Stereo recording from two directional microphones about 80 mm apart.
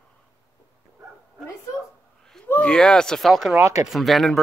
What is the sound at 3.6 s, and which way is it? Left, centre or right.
Speech, right.